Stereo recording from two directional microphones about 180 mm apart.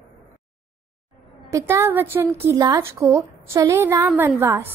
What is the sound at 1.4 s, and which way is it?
A woman's voice, 15° right (ahead or behind).